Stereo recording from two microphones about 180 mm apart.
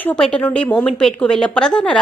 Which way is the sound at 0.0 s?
5° left (ahead or behind).